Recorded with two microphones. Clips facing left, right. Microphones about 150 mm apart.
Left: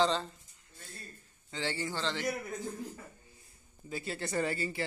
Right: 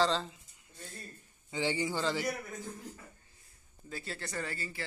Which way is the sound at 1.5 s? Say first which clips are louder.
Right 3 dB; 15° right (ahead or behind).